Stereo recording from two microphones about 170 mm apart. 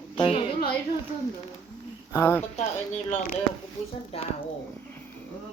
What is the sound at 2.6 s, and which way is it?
Speech, 40° left (ahead or behind).